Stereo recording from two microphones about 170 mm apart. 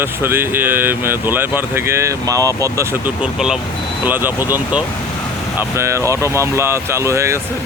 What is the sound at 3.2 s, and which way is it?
Speech, 5° right (ahead or behind).